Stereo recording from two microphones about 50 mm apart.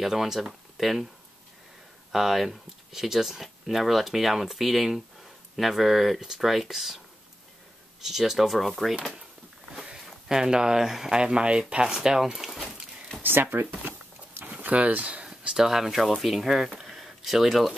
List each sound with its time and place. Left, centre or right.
0.0 s speech: centre
2.1 s speech: centre
8.0 s speech: centre
10.0 s speech: centre
11.1 s speech: centre
13.2 s a sound: right
14.5 s speech: right
15.2 s speech: centre
16.8 s a sound: centre